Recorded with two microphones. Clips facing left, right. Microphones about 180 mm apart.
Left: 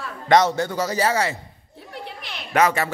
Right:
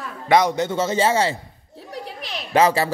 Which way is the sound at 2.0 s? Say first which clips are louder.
Right 3 dB; 30° right (ahead or behind).